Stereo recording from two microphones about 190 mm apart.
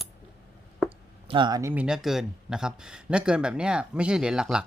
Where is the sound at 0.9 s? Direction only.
25° right (ahead or behind).